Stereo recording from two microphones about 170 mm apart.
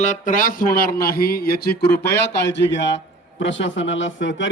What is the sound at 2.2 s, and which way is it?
A man's voice, 90° left.